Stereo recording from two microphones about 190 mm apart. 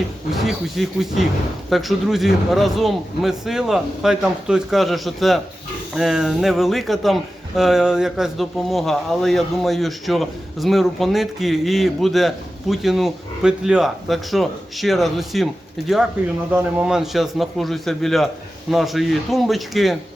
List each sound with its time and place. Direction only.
0.3 s speech: centre (ahead or behind)
16.5 s speech: 10° right (ahead or behind)